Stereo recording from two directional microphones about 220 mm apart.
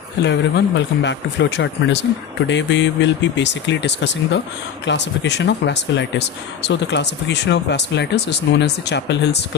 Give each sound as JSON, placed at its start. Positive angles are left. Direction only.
{"t": 0.2, "sound": "speech", "side_deg": 55}